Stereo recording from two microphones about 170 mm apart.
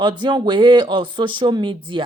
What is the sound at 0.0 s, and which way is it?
Speech, 25° right (ahead or behind).